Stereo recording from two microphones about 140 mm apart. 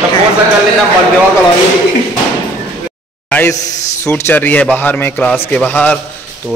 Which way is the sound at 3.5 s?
25° left (ahead or behind).